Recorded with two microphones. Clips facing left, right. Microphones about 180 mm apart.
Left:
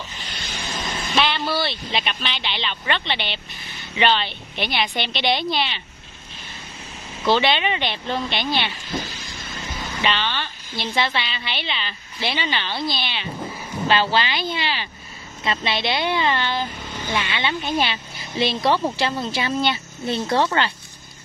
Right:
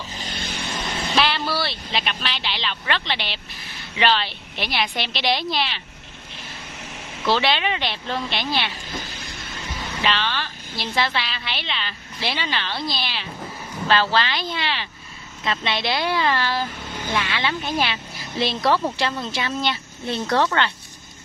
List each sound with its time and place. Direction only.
0.2 s vehicle: 50° right (ahead or behind)
1.1 s speech: centre (ahead or behind)
7.2 s a woman's voice: centre (ahead or behind)
10.0 s a woman's voice: centre (ahead or behind)